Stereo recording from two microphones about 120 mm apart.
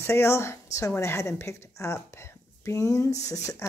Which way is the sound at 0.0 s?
20° left (ahead or behind).